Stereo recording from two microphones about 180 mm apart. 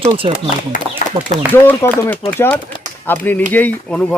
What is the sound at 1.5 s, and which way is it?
Speech, 10° left (ahead or behind).